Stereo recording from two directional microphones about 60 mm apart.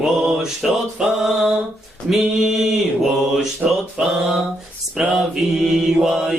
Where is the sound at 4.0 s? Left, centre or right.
Centre.